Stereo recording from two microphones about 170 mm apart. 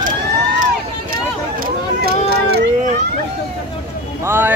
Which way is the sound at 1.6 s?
70° right (ahead or behind).